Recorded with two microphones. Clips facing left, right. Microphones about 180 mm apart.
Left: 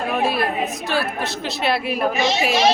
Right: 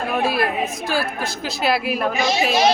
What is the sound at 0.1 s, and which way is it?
A woman's voice, centre (ahead or behind).